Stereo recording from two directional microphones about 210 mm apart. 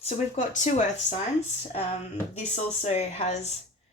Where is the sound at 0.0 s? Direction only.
35° left (ahead or behind).